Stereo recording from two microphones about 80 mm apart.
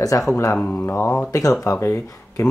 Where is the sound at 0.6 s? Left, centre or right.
Left.